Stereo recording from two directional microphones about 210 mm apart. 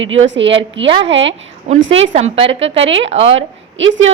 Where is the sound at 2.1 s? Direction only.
30° right (ahead or behind).